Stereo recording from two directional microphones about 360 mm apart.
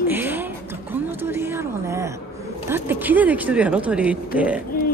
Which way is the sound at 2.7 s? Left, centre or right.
Centre.